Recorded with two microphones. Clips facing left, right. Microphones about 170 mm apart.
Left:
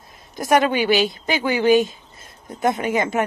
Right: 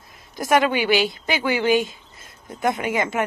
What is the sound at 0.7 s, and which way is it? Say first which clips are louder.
Speech: left 2 dB; 20° left (ahead or behind).